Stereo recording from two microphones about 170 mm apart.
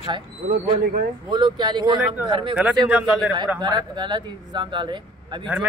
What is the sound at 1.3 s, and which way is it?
Speech, 25° right (ahead or behind).